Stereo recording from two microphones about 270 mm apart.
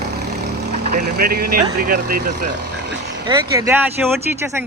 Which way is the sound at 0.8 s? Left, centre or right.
Right.